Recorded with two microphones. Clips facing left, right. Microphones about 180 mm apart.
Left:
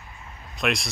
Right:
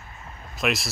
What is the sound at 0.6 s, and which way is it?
Speech, centre (ahead or behind).